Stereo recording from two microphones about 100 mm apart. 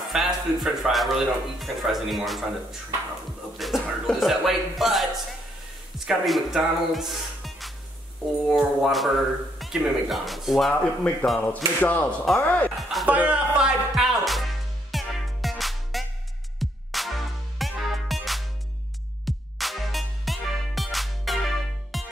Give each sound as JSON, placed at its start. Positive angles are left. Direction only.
{"t": 0.1, "sound": "speech", "side_deg": -5}
{"t": 10.8, "sound": "speech", "side_deg": 10}
{"t": 12.7, "sound": "music", "side_deg": 0}
{"t": 13.1, "sound": "music", "side_deg": -10}